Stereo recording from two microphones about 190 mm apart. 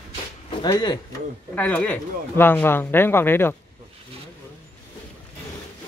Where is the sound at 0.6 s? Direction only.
20° left (ahead or behind).